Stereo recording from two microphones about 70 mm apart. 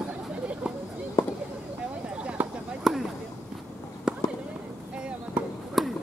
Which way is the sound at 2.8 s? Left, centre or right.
Centre.